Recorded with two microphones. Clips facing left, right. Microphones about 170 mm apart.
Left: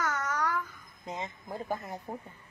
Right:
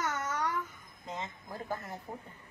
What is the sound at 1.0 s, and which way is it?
Speech, 20° left (ahead or behind).